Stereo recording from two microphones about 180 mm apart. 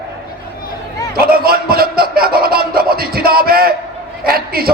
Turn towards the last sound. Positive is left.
turn(degrees=-55)  # may be behind; listen again after turning